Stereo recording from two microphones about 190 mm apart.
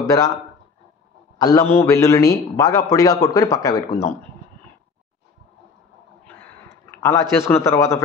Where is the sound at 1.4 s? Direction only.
15° left (ahead or behind).